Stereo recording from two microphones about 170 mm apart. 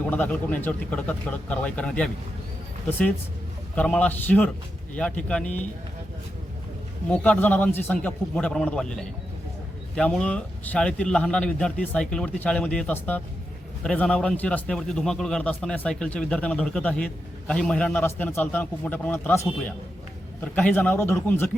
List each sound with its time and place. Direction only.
0.0 s a man's voice: 10° left (ahead or behind)
3.8 s a man's voice: 5° left (ahead or behind)
7.1 s a man's voice: 5° left (ahead or behind)